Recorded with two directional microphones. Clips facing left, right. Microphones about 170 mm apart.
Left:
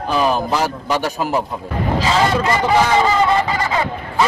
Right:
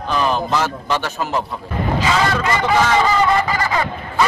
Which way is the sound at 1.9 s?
30° left (ahead or behind).